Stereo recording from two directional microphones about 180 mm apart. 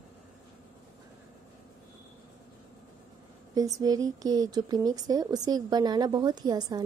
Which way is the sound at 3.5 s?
20° right (ahead or behind).